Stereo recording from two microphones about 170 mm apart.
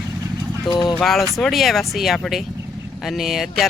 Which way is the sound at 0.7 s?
25° left (ahead or behind).